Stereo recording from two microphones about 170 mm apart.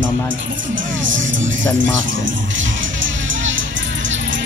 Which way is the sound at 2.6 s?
90° right.